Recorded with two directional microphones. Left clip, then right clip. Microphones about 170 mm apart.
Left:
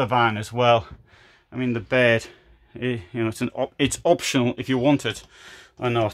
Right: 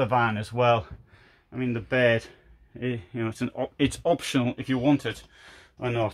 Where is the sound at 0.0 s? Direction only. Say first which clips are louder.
Left 3 dB; 25° left (ahead or behind).